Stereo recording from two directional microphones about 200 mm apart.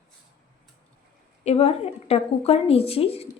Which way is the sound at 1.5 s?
30° left (ahead or behind).